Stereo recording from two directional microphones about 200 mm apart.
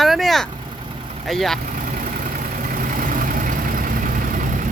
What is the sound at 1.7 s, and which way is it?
Vehicle, 40° right (ahead or behind).